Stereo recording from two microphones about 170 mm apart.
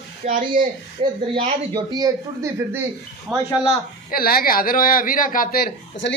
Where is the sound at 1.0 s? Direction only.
35° right (ahead or behind); by 2.8 s 20° right (ahead or behind).